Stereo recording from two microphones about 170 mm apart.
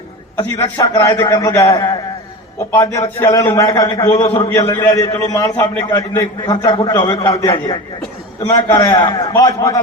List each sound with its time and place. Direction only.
0.3 s a man's voice: 20° left (ahead or behind)
3.2 s a man's voice: 15° left (ahead or behind)